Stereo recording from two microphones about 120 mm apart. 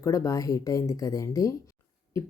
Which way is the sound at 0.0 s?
25° left (ahead or behind).